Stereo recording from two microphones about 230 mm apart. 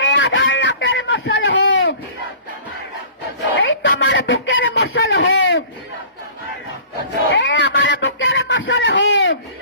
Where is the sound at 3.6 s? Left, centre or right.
Left.